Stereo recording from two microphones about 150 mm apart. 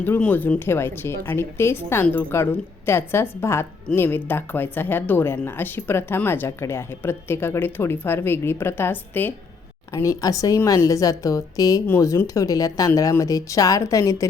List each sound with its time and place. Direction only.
0.0 s a woman's voice: 10° left (ahead or behind)